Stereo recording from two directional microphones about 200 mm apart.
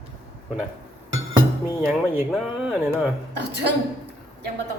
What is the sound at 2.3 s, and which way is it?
Speech, 5° right (ahead or behind).